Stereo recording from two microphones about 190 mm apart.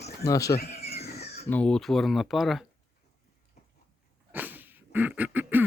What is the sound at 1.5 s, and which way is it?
Speech, 5° left (ahead or behind).